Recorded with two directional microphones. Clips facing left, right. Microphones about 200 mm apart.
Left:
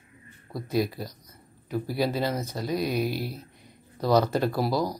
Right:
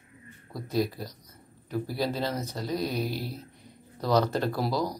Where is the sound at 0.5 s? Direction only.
10° left (ahead or behind).